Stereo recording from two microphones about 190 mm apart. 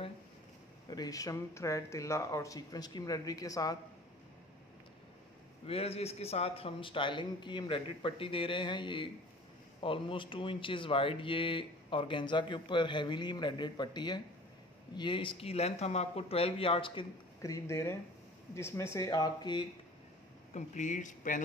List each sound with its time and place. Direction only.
0.8 s speech: 20° left (ahead or behind)
5.7 s speech: 30° left (ahead or behind)
20.5 s speech: 40° left (ahead or behind)